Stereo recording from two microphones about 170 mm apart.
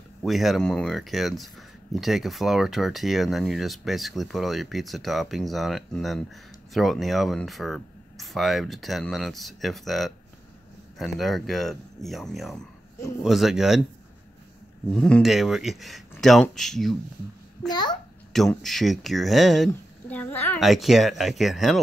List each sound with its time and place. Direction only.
0.2 s speech: centre (ahead or behind)
14.9 s speech: 5° left (ahead or behind)
17.6 s a child's voice: 25° left (ahead or behind)
18.3 s speech: centre (ahead or behind)
20.5 s speech: centre (ahead or behind)